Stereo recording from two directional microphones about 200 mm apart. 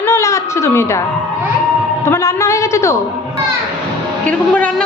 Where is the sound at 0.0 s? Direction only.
15° left (ahead or behind).